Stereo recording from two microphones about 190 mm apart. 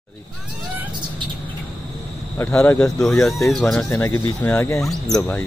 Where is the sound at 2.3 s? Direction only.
10° left (ahead or behind).